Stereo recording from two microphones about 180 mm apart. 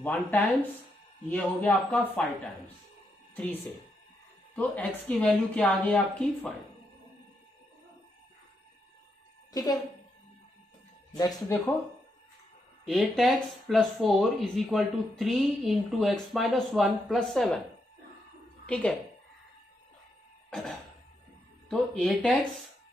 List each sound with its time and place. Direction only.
0.0 s a woman's voice: 10° left (ahead or behind)
4.6 s a woman's voice: 10° left (ahead or behind)
9.5 s speech: 20° left (ahead or behind)
11.1 s speech: 20° left (ahead or behind)
12.8 s speech: centre (ahead or behind)
18.7 s a woman's voice: 5° left (ahead or behind)
20.4 s cough: 5° left (ahead or behind)
21.6 s speech: 5° left (ahead or behind)